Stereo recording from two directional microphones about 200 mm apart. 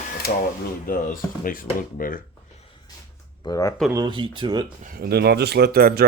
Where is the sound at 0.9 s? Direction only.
45° left (ahead or behind).